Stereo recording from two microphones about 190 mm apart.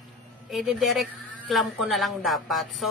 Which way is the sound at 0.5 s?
Centre (ahead or behind).